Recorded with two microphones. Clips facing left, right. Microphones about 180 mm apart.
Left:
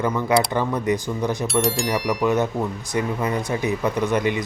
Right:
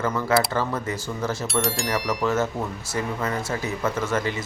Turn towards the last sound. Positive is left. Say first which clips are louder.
# left 4 dB
turn(degrees=15)  # may be behind; listen again after turning